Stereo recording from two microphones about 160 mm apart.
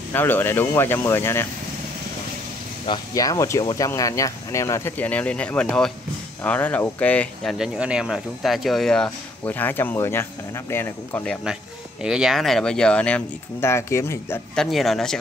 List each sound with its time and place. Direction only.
0.1 s speech: 15° left (ahead or behind)
2.9 s speech: 20° left (ahead or behind)
7.5 s speech: 5° right (ahead or behind); by 11.3 s 15° left (ahead or behind)
12.0 s speech: 5° right (ahead or behind); by 14.4 s 15° left (ahead or behind)
14.5 s speech: centre (ahead or behind)